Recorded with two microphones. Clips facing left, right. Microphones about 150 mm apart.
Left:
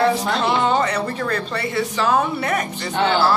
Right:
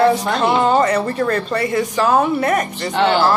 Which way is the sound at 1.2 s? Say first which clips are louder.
Right 5 dB; 45° right (ahead or behind).